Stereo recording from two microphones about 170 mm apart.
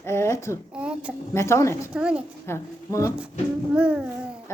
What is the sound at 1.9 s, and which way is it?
Speech, 5° right (ahead or behind).